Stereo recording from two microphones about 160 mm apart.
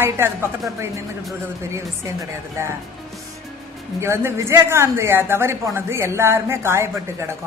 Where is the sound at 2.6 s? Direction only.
15° right (ahead or behind).